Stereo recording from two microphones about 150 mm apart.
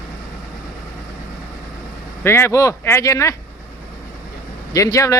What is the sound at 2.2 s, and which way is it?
Speech, 15° left (ahead or behind).